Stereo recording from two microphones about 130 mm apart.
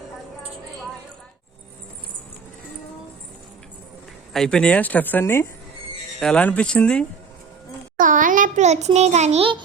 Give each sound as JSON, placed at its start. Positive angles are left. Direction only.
{"t": 4.3, "sound": "speech", "side_deg": 5}
{"t": 6.1, "sound": "speech", "side_deg": 5}
{"t": 7.9, "sound": "a sound", "side_deg": -90}